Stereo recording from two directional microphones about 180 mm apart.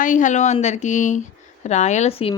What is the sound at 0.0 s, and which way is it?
A woman's voice, 45° left (ahead or behind).